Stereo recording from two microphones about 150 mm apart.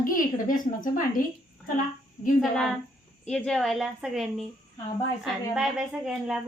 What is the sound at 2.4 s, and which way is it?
A woman's voice, 5° left (ahead or behind).